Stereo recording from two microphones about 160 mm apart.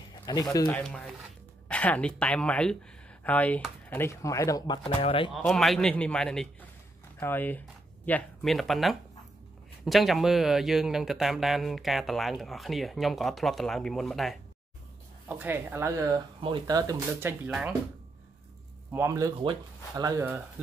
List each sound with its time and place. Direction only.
0.1 s speech: 25° left (ahead or behind)
0.7 s speech: 5° left (ahead or behind)
4.8 s speech: 40° left (ahead or behind)
5.3 s speech: centre (ahead or behind)
15.2 s speech: 10° right (ahead or behind)
16.3 s speech: 30° right (ahead or behind)
17.5 s speech: 5° right (ahead or behind)
18.9 s speech: 15° right (ahead or behind)